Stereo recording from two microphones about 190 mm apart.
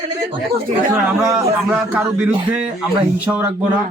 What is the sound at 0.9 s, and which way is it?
A man's voice, 15° right (ahead or behind).